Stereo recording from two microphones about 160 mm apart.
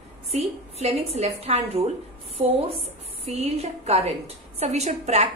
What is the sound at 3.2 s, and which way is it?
A woman's voice, 40° right (ahead or behind).